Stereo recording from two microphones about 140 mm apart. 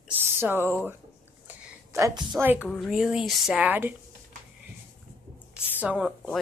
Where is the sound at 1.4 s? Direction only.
20° right (ahead or behind).